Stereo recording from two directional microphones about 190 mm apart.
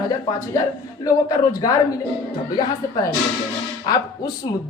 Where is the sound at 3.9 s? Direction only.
20° left (ahead or behind).